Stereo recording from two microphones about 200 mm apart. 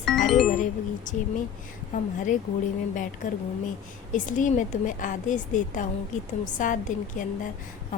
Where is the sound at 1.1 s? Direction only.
40° left (ahead or behind).